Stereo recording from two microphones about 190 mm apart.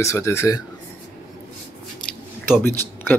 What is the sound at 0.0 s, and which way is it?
Speech, 15° left (ahead or behind).